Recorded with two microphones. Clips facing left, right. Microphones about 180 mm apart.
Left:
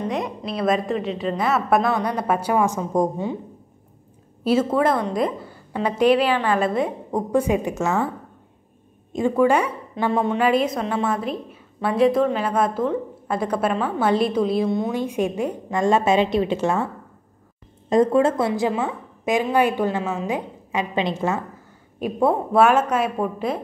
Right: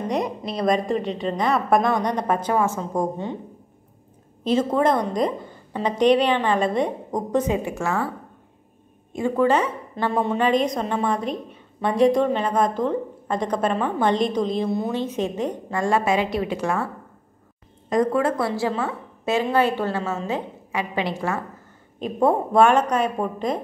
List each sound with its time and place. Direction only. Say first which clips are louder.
0.1 s a woman's voice: right 1 dB; centre (ahead or behind)
4.5 s a woman's voice: left 1 dB; 5° left (ahead or behind)
9.1 s a woman's voice: left 2 dB; 15° left (ahead or behind)
10.1 s a woman's voice: left 1 dB; centre (ahead or behind)
15.7 s a woman's voice: left 3 dB; 20° left (ahead or behind)
22.0 s a woman's voice: even; 5° left (ahead or behind)